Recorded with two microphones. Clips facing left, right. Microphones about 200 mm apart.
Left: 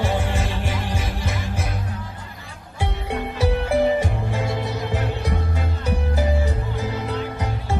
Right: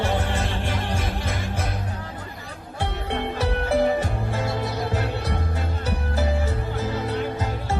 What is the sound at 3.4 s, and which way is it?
Music, 10° left (ahead or behind).